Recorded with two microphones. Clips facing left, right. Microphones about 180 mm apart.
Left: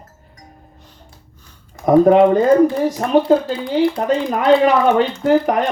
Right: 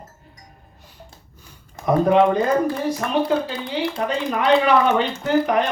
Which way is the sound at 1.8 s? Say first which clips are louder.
Left 6 dB; 45° left (ahead or behind).